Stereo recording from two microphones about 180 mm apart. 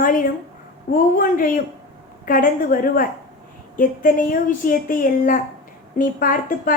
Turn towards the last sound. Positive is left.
turn(degrees=50)  # may be behind; listen again after turning